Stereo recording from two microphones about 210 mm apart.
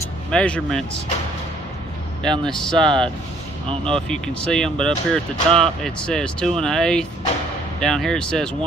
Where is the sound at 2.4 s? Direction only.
5° left (ahead or behind).